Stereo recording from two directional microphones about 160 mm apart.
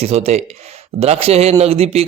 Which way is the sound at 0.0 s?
40° right (ahead or behind).